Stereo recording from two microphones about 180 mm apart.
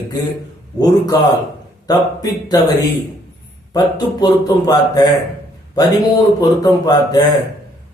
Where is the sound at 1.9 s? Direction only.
20° left (ahead or behind).